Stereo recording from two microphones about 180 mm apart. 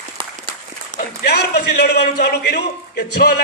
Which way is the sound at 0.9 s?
65° left (ahead or behind).